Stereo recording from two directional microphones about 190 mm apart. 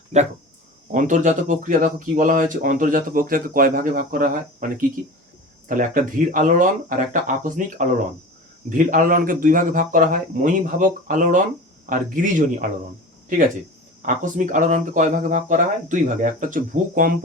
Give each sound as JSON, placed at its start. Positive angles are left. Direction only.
{"t": 0.1, "sound": "speech", "side_deg": -35}
{"t": 8.9, "sound": "speech", "side_deg": -45}
{"t": 14.0, "sound": "speech", "side_deg": -45}